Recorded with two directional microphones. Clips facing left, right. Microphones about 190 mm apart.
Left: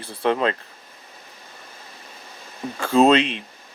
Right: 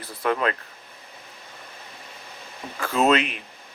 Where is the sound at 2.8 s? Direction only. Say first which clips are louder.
Left 5 dB; 30° left (ahead or behind).